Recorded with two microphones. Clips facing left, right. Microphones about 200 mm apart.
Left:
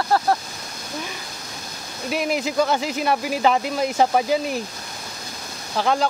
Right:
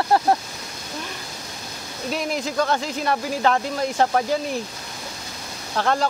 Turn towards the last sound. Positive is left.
turn(degrees=0)  # may be behind; listen again after turning